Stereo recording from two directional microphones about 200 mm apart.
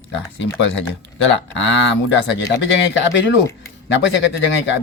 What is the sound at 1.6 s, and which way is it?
Speech, 65° left (ahead or behind).